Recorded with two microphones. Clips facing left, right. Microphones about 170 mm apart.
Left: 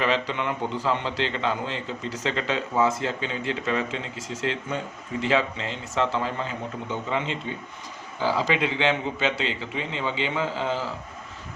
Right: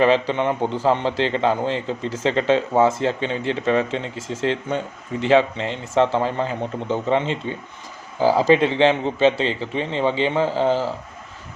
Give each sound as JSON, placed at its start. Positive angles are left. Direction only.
{"t": 0.3, "sound": "a man's voice", "side_deg": -30}